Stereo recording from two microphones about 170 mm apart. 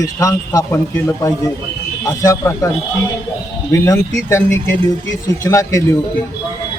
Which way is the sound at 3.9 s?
15° left (ahead or behind).